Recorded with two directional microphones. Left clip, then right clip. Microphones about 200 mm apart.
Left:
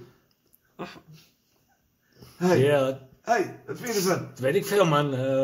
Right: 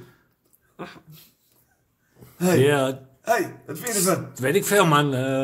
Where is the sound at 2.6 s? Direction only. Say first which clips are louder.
Right 2 dB; 35° right (ahead or behind).